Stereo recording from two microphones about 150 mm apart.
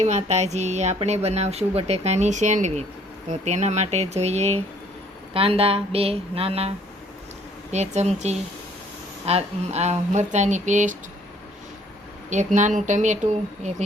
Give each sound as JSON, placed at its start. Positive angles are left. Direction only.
{"t": 0.0, "sound": "speech", "side_deg": -50}
{"t": 12.5, "sound": "speech", "side_deg": -55}